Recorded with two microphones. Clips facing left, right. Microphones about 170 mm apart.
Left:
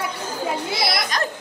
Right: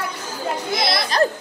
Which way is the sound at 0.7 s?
25° right (ahead or behind).